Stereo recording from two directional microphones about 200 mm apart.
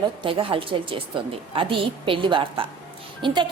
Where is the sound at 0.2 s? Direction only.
25° right (ahead or behind).